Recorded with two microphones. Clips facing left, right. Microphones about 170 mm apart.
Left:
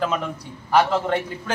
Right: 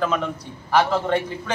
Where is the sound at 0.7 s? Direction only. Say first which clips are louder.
Even; 5° left (ahead or behind).